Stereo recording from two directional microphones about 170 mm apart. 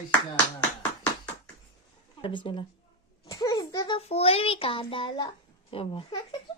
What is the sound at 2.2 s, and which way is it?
A child's voice, 30° left (ahead or behind).